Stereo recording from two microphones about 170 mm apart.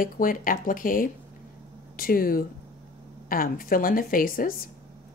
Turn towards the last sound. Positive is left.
turn(degrees=55)  # may be behind; listen again after turning